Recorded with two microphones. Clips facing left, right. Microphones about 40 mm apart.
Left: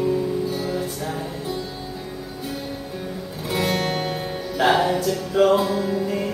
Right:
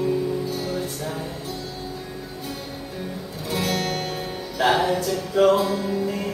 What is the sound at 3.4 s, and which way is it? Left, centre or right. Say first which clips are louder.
Music: left 2 dB; centre.